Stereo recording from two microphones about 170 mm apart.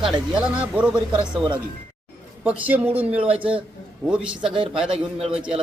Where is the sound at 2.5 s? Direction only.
10° right (ahead or behind).